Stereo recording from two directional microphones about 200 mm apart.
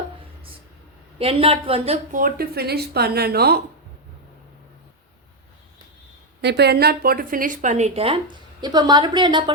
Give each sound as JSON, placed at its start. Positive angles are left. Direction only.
{"t": 1.2, "sound": "a woman's voice", "side_deg": -30}
{"t": 2.1, "sound": "speech", "side_deg": -45}
{"t": 6.4, "sound": "a woman's voice", "side_deg": -55}